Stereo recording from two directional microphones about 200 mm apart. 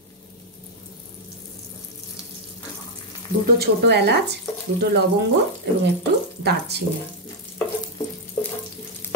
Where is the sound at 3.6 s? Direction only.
55° right (ahead or behind).